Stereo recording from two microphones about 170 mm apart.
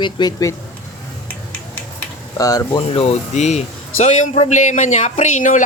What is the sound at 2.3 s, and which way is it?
Speech, 20° left (ahead or behind).